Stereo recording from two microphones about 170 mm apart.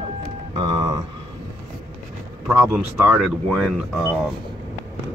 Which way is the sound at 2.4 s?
10° right (ahead or behind).